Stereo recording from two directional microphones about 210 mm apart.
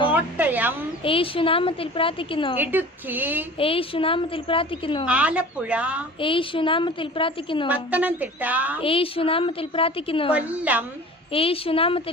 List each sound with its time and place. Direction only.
0.1 s a sound: 10° right (ahead or behind)
1.0 s a woman's voice: 25° left (ahead or behind)
2.6 s a woman's voice: 10° right (ahead or behind)
3.6 s a woman's voice: 25° left (ahead or behind)
5.0 s speech: 5° right (ahead or behind)
6.1 s a woman's voice: 25° left (ahead or behind)
7.7 s a woman's voice: 5° right (ahead or behind)
8.8 s a woman's voice: 25° left (ahead or behind)
10.3 s a woman's voice: 5° right (ahead or behind)
11.3 s a woman's voice: 25° left (ahead or behind)